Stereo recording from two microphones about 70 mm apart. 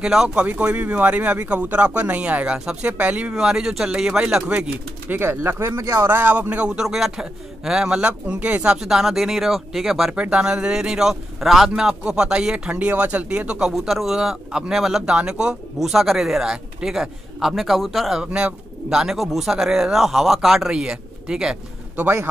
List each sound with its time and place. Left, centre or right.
0.0 s a man's voice: centre
3.3 s a man's voice: centre; by 6.2 s right
6.2 s a man's voice: right
8.8 s speech: centre
10.1 s a man's voice: centre
18.2 s speech: centre